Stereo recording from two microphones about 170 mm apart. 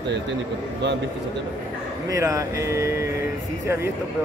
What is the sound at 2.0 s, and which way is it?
Speech, 20° right (ahead or behind).